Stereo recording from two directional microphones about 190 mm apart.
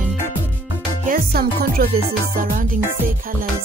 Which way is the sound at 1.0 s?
50° right (ahead or behind).